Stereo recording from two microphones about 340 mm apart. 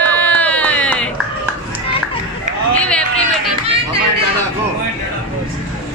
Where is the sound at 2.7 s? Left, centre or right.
Centre.